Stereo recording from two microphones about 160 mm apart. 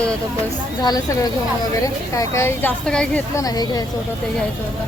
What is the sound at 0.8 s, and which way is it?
A woman's voice, 25° left (ahead or behind).